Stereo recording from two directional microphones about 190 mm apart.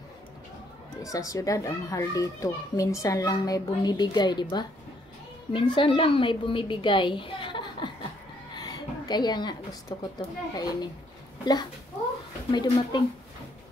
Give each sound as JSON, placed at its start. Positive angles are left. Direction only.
{"t": 1.0, "sound": "a child's voice", "side_deg": 15}
{"t": 12.4, "sound": "a woman's voice", "side_deg": 25}